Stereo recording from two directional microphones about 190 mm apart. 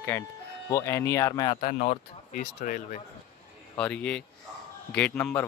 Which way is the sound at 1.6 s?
40° left (ahead or behind).